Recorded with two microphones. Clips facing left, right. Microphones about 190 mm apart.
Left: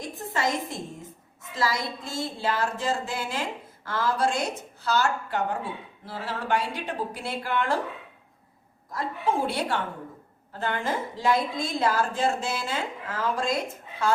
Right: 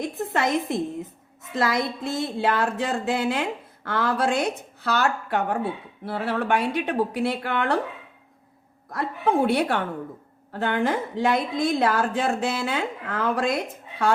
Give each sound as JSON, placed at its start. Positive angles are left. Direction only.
{"t": 0.0, "sound": "music", "side_deg": -60}
{"t": 1.5, "sound": "speech", "side_deg": -60}
{"t": 8.9, "sound": "speech", "side_deg": -60}